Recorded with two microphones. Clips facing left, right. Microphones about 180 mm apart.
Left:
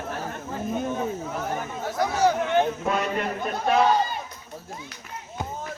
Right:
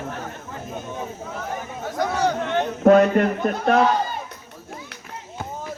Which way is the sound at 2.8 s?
55° right (ahead or behind).